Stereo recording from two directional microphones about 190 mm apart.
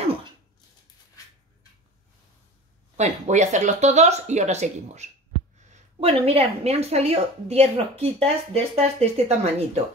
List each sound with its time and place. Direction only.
3.0 s a woman's voice: 40° right (ahead or behind)